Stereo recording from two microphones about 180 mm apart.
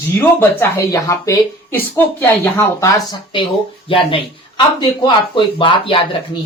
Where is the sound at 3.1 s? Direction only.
25° left (ahead or behind).